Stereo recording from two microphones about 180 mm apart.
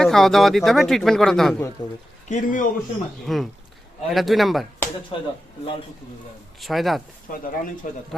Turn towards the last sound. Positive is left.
turn(degrees=50)  # may be behind; listen again after turning